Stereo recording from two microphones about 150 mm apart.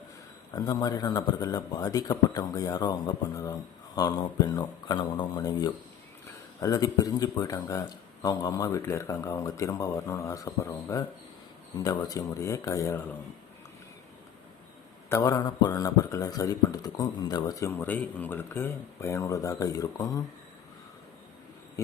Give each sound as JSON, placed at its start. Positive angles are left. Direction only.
{"t": 0.5, "sound": "speech", "side_deg": 25}
{"t": 15.1, "sound": "speech", "side_deg": 20}